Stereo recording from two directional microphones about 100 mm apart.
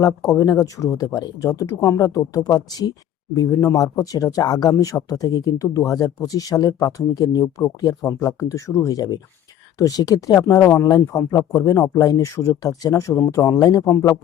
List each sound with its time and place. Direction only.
0.0 s speech: 40° left (ahead or behind)